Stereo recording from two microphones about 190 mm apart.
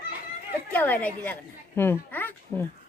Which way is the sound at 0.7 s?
10° left (ahead or behind).